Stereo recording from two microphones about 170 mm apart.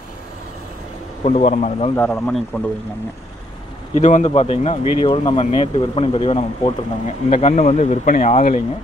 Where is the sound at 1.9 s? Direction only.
10° left (ahead or behind).